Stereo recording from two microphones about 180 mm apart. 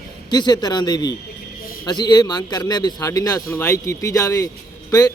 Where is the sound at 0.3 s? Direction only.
20° left (ahead or behind).